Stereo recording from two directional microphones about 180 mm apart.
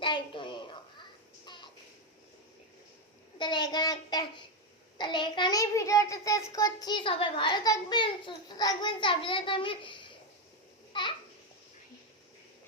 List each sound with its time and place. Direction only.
0.0 s a sound: 25° left (ahead or behind)
3.3 s a child's voice: 25° left (ahead or behind)
10.9 s babbling: 25° left (ahead or behind)